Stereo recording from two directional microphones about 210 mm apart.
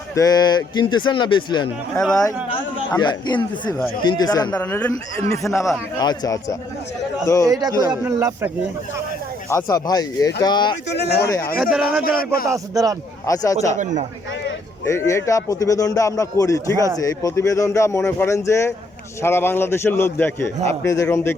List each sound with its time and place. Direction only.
0.2 s a man's voice: 20° left (ahead or behind)
7.4 s speech: 15° right (ahead or behind)
9.5 s a man's voice: 15° left (ahead or behind)
10.8 s speech: 50° left (ahead or behind)
11.3 s a man's voice: 15° left (ahead or behind)
11.6 s a man's voice: 5° right (ahead or behind)
12.0 s speech: 45° left (ahead or behind)
12.5 s speech: 15° right (ahead or behind)
13.2 s a man's voice: 15° left (ahead or behind)
14.8 s a man's voice: 15° left (ahead or behind)